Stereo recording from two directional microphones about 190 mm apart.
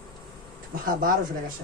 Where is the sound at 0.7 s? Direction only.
50° right (ahead or behind).